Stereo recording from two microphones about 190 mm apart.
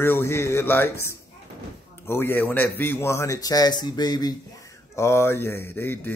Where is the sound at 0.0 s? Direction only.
10° left (ahead or behind).